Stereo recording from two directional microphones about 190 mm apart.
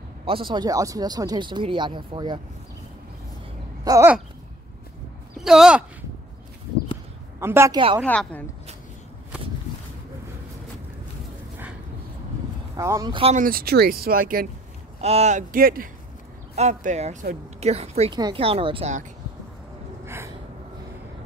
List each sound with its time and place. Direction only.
0.2 s speech: 25° right (ahead or behind)
3.8 s a sound: 15° right (ahead or behind)
5.4 s speech: 5° right (ahead or behind)
7.3 s a woman's voice: 15° right (ahead or behind)
8.0 s speech: 5° left (ahead or behind)
12.7 s speech: 15° right (ahead or behind)
13.4 s speech: 50° right (ahead or behind)
15.0 s speech: 35° right (ahead or behind)
16.5 s speech: 35° right (ahead or behind)
20.1 s gasp: 15° right (ahead or behind)